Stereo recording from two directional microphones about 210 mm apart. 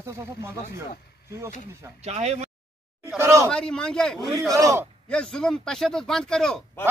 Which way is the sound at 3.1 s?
15° right (ahead or behind).